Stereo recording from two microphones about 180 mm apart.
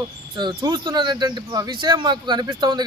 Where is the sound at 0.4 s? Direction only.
25° right (ahead or behind).